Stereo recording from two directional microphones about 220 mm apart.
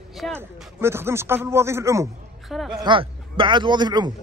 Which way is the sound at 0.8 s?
10° right (ahead or behind).